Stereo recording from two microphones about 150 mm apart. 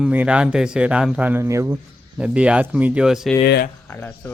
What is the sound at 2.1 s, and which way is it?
A man's voice, 5° right (ahead or behind).